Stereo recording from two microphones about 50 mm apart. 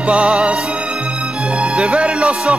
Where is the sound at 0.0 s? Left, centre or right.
Right.